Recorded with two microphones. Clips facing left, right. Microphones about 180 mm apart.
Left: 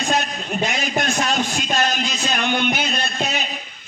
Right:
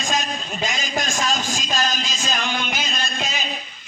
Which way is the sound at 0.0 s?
60° left (ahead or behind).